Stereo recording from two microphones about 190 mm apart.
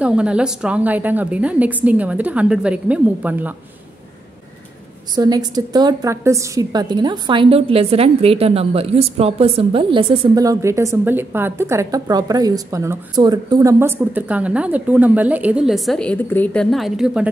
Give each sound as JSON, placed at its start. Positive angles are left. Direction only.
{"t": 0.0, "sound": "a woman's voice", "side_deg": -5}
{"t": 5.1, "sound": "a woman's voice", "side_deg": -20}